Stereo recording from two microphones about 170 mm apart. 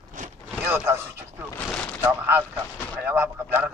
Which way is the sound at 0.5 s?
15° right (ahead or behind).